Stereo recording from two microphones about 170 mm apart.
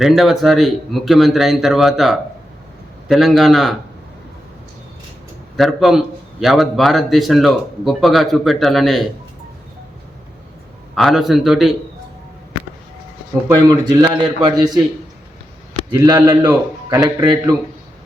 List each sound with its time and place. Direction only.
0.0 s speech: centre (ahead or behind)
5.5 s speech: centre (ahead or behind)
10.9 s speech: centre (ahead or behind)
13.7 s a man's voice: 25° right (ahead or behind)
15.9 s a man's voice: 20° right (ahead or behind)